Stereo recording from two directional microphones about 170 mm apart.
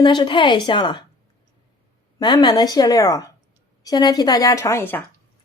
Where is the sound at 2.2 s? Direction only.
25° left (ahead or behind).